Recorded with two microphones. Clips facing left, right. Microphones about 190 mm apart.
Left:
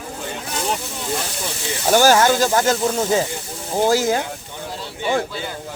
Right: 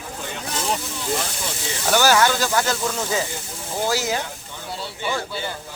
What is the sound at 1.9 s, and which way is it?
Speech, 45° left (ahead or behind).